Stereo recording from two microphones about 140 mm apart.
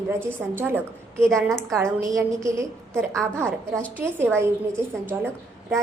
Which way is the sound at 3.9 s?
15° right (ahead or behind).